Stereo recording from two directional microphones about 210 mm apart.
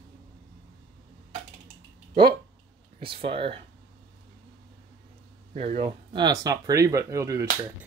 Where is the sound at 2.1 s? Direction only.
25° right (ahead or behind).